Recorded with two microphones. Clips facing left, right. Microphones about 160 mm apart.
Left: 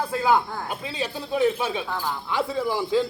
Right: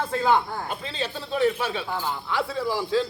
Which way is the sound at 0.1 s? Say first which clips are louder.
Even; 10° left (ahead or behind).